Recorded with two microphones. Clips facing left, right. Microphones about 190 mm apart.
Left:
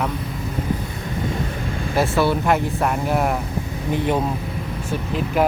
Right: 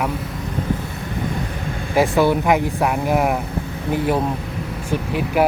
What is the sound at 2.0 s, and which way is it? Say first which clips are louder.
Speech: right 3 dB; 15° right (ahead or behind).